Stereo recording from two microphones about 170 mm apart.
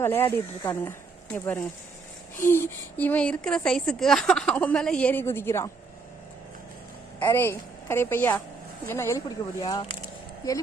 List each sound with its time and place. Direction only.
0.0 s a woman's voice: 15° left (ahead or behind)
7.2 s a woman's voice: 10° left (ahead or behind)